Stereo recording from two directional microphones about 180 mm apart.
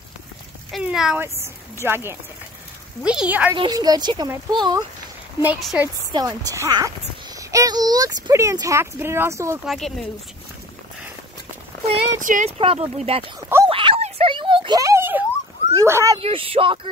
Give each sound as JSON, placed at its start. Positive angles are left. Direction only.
{"t": 0.7, "sound": "a sound", "side_deg": 0}
{"t": 3.0, "sound": "speech", "side_deg": -5}
{"t": 3.5, "sound": "a woman's voice", "side_deg": -25}
{"t": 5.4, "sound": "speech", "side_deg": -5}
{"t": 6.1, "sound": "a woman's voice", "side_deg": -20}
{"t": 9.7, "sound": "speech", "side_deg": 0}
{"t": 12.2, "sound": "speech", "side_deg": -45}
{"t": 12.5, "sound": "speech", "side_deg": -35}
{"t": 13.4, "sound": "speech", "side_deg": -15}
{"t": 13.7, "sound": "a sound", "side_deg": -30}
{"t": 15.7, "sound": "speech", "side_deg": -15}
{"t": 16.2, "sound": "speech", "side_deg": -30}